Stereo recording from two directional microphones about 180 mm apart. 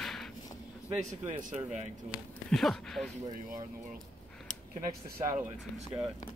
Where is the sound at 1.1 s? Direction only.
40° right (ahead or behind).